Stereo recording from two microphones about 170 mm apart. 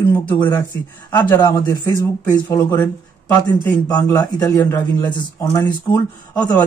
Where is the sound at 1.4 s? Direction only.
20° left (ahead or behind).